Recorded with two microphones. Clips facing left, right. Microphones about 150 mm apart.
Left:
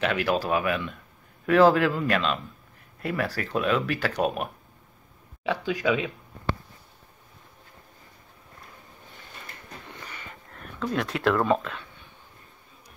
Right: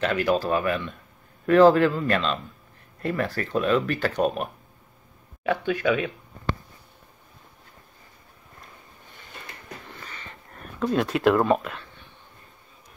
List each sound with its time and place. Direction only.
0.0 s speech: 5° left (ahead or behind)
5.7 s speech: 10° left (ahead or behind)
10.8 s speech: 20° right (ahead or behind)